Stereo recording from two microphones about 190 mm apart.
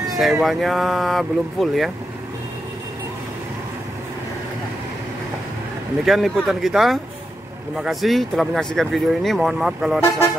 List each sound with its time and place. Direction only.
0.0 s speech: centre (ahead or behind)
6.0 s speech: centre (ahead or behind)